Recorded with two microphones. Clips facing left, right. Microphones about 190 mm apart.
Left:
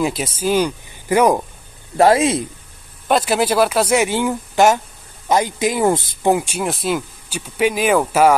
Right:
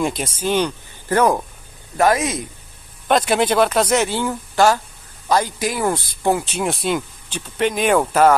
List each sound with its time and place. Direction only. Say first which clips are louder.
0.0 s speech: left 2 dB; 5° left (ahead or behind)
2.0 s speech: left 4 dB; 30° left (ahead or behind)
3.1 s speech: even; 5° left (ahead or behind)
6.6 s speech: even; centre (ahead or behind)